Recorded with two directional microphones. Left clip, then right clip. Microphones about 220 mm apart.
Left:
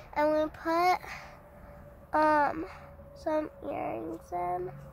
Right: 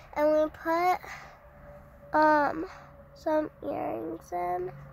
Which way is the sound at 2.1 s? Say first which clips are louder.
Right 2 dB; 5° right (ahead or behind).